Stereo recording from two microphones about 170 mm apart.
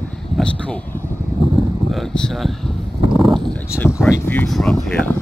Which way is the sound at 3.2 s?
Centre (ahead or behind).